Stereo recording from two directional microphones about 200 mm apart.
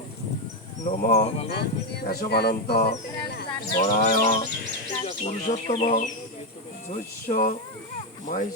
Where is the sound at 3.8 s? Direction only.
40° left (ahead or behind).